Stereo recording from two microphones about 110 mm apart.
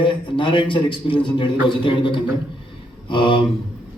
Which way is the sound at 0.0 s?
50° left (ahead or behind).